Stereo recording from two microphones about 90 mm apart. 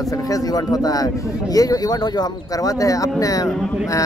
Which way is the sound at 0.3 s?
45° left (ahead or behind).